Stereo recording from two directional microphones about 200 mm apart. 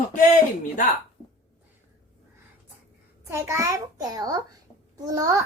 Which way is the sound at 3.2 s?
10° right (ahead or behind).